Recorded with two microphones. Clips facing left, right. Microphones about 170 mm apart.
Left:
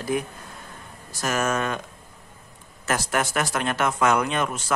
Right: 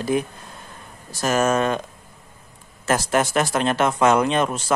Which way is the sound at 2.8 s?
30° right (ahead or behind).